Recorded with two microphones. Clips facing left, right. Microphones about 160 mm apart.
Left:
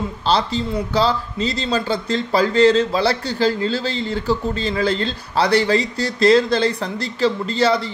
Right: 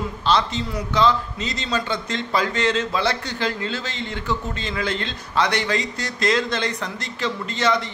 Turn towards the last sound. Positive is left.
turn(degrees=35)  # may be behind; listen again after turning